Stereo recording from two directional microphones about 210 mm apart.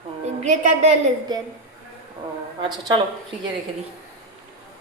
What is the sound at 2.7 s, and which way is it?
Speech, 20° right (ahead or behind).